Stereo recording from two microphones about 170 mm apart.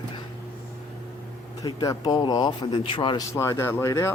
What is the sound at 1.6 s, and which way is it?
A man's voice, 20° left (ahead or behind).